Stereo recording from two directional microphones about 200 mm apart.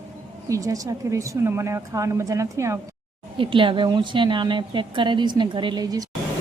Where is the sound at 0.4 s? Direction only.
15° right (ahead or behind).